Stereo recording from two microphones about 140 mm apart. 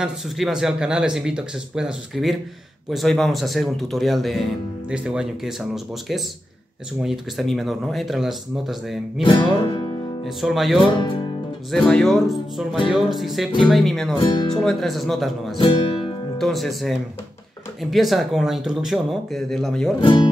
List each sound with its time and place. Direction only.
0.0 s speech: 5° right (ahead or behind)
9.2 s music: 35° left (ahead or behind)
10.2 s speech: centre (ahead or behind)
14.2 s speech: 30° left (ahead or behind)
14.5 s speech: 5° left (ahead or behind)
15.5 s music: 35° left (ahead or behind)
16.3 s speech: centre (ahead or behind)
20.0 s speech: 35° left (ahead or behind)